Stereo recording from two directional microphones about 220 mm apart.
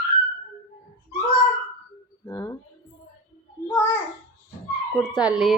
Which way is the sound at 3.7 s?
10° left (ahead or behind).